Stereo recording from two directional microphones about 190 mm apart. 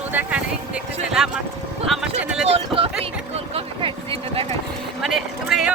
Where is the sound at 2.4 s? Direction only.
30° right (ahead or behind).